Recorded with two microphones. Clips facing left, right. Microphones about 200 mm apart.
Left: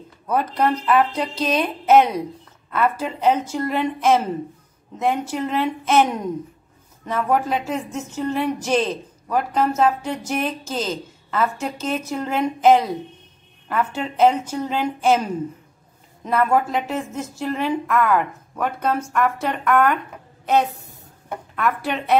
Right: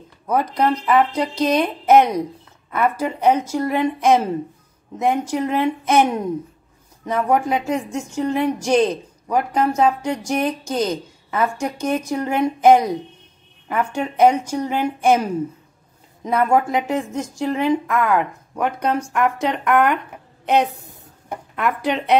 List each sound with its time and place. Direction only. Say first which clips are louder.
0.3 s a woman's voice: right 1 dB; 10° right (ahead or behind)
16.3 s a woman's voice: right 2 dB; 15° right (ahead or behind)
21.5 s a woman's voice: right 2 dB; 15° right (ahead or behind)